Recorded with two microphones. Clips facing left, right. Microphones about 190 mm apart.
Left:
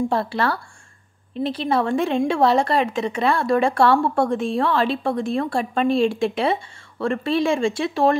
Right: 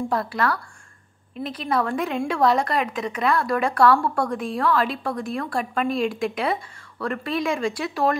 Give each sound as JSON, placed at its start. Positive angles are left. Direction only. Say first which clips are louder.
{"t": 0.1, "sound": "a woman's voice", "louder": "left 2 dB", "side_deg": 30}